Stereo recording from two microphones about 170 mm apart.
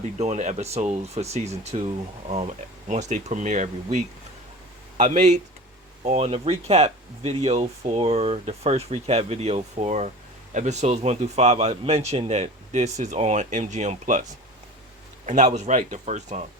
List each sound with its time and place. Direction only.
0.2 s a man's voice: 40° right (ahead or behind)
15.3 s a man's voice: 45° right (ahead or behind)